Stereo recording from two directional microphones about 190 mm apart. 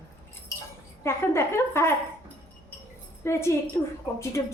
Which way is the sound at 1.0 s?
15° left (ahead or behind).